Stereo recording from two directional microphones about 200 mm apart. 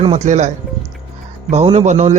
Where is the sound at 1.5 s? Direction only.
35° right (ahead or behind).